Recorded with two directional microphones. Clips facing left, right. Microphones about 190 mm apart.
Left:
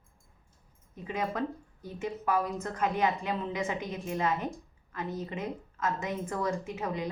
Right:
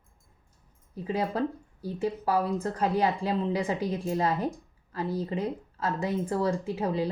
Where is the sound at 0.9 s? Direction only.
35° right (ahead or behind).